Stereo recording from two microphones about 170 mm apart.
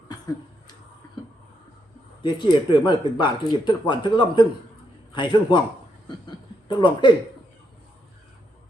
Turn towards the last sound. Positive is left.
turn(degrees=25)  # may be behind; listen again after turning